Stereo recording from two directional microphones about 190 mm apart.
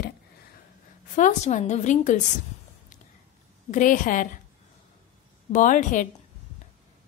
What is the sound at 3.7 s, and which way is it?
Speech, 45° left (ahead or behind).